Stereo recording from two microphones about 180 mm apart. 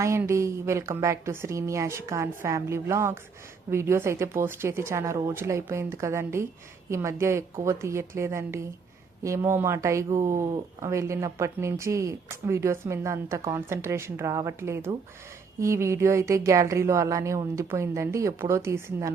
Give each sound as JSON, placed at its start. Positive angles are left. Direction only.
{"t": 0.0, "sound": "speech", "side_deg": -15}